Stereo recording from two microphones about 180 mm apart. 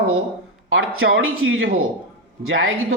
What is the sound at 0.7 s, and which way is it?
Speech, 90° right.